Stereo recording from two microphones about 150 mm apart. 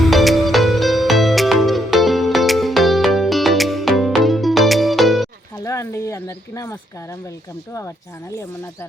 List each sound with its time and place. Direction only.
0.0 s music: centre (ahead or behind)
5.6 s a sound: 20° left (ahead or behind)
7.7 s speech: 20° left (ahead or behind)